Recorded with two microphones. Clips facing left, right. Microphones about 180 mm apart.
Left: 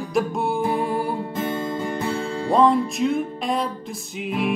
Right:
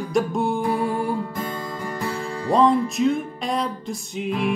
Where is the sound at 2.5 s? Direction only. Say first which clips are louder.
Even; centre (ahead or behind).